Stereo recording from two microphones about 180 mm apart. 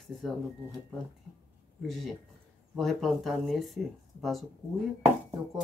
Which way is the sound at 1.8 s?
Centre (ahead or behind).